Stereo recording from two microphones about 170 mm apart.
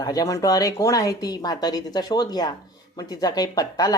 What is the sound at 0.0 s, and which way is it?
Speech, 20° left (ahead or behind).